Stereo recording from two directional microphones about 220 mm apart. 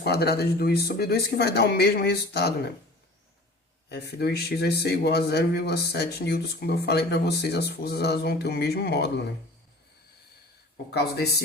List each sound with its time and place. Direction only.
0.0 s speech: 45° left (ahead or behind)
3.8 s speech: 45° left (ahead or behind)
10.9 s speech: 50° left (ahead or behind)